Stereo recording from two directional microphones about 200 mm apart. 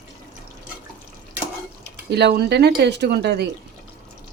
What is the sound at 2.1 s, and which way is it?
Speech, 55° right (ahead or behind).